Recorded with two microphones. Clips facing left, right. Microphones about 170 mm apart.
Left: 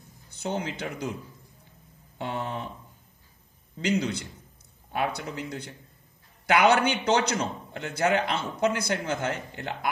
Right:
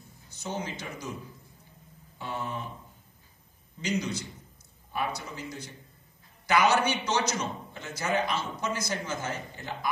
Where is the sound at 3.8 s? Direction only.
60° left (ahead or behind).